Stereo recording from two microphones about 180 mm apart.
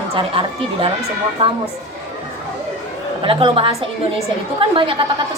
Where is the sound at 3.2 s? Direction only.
30° right (ahead or behind).